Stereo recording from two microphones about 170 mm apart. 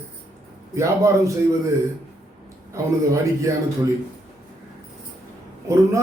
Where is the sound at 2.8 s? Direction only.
20° right (ahead or behind).